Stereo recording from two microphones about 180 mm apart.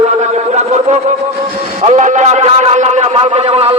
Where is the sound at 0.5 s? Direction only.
40° right (ahead or behind).